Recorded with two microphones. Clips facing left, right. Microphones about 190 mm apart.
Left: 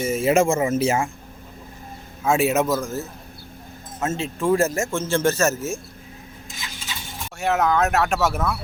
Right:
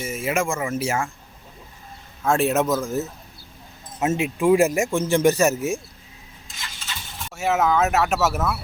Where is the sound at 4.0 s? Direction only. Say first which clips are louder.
Right 3 dB; 15° right (ahead or behind).